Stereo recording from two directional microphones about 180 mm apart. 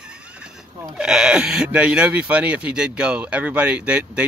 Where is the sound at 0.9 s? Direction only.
5° right (ahead or behind).